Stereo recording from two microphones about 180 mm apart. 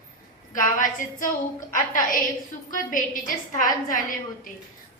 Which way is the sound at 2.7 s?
50° left (ahead or behind).